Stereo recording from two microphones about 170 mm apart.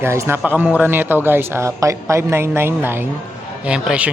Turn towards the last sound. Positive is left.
turn(degrees=-5)  # may be behind; listen again after turning